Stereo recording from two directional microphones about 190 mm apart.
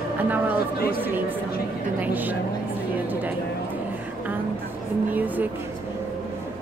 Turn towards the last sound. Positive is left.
turn(degrees=-10)  # may be behind; listen again after turning